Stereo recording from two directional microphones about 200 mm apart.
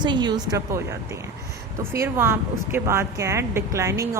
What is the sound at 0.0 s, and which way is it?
Speech, 20° right (ahead or behind).